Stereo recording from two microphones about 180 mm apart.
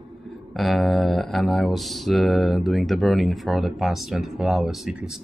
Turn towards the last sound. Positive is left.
turn(degrees=0)  # may be behind; listen again after turning